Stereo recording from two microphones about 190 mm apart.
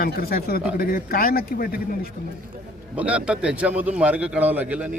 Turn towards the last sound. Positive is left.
turn(degrees=-5)  # may be behind; listen again after turning